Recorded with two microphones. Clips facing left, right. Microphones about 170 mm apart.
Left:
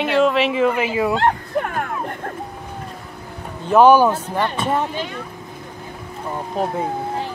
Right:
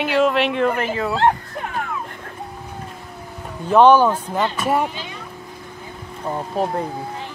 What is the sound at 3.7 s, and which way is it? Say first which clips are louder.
Speech: left 1 dB; 10° left (ahead or behind).